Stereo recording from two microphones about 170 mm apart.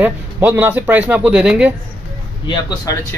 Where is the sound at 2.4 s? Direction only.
20° left (ahead or behind).